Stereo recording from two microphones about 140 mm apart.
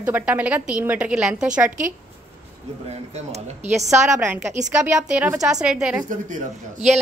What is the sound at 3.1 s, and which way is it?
Speech, 50° right (ahead or behind).